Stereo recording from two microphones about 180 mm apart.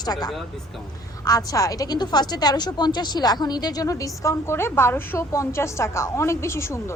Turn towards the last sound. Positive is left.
turn(degrees=15)  # may be behind; listen again after turning